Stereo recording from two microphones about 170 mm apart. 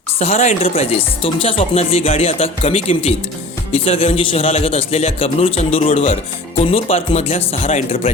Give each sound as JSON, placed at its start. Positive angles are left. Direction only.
{"t": 0.2, "sound": "speech", "side_deg": 40}